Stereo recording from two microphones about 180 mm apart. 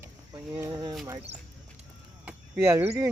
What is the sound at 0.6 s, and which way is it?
Speech, 20° right (ahead or behind).